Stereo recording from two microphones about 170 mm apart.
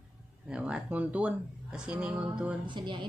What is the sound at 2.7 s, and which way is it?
Speech, 25° right (ahead or behind).